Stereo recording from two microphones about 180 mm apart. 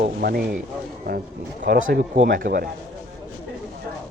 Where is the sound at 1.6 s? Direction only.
50° right (ahead or behind).